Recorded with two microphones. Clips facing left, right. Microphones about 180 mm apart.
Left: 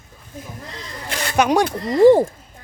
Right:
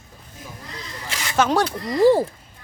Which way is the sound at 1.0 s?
55° left (ahead or behind).